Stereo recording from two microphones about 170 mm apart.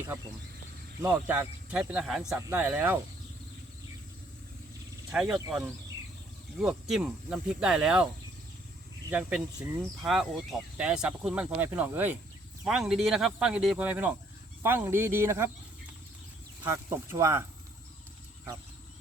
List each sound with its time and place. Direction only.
1.0 s speech: 10° right (ahead or behind)
5.1 s speech: centre (ahead or behind)
9.0 s speech: 10° right (ahead or behind)
16.6 s speech: 15° right (ahead or behind)